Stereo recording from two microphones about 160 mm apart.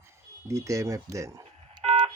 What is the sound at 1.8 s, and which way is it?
Telephone dialing, 40° right (ahead or behind).